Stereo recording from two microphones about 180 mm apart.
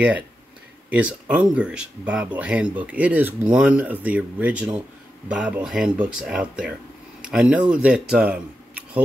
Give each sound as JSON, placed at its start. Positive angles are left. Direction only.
{"t": 0.8, "sound": "speech", "side_deg": -10}